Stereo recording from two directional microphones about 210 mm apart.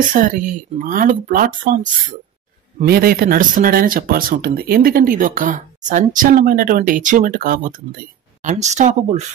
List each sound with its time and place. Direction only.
0.1 s speech: 40° right (ahead or behind)